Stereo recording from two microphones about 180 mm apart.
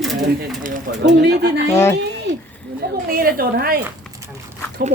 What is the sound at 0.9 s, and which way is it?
Speech, 70° right (ahead or behind).